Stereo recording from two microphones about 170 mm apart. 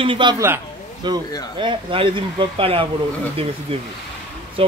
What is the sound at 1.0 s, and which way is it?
A man's voice, 25° right (ahead or behind).